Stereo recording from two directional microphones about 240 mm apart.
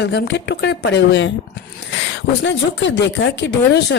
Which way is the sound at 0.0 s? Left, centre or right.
Left.